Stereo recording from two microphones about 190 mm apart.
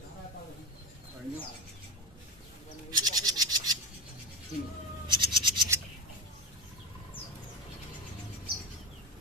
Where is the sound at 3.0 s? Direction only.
20° right (ahead or behind).